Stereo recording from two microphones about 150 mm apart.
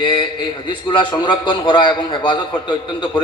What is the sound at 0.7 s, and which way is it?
A man's voice, 35° left (ahead or behind).